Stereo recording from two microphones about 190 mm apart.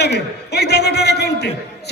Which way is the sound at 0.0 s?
60° left (ahead or behind).